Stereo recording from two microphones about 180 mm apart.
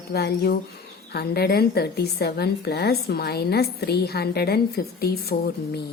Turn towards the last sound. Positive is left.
turn(degrees=65)  # may be behind; listen again after turning